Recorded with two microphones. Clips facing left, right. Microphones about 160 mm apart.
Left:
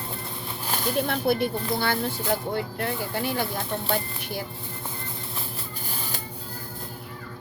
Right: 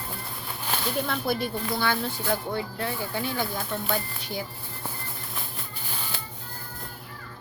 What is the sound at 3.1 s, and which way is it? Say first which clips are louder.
Speech: left 2 dB; 55° left (ahead or behind).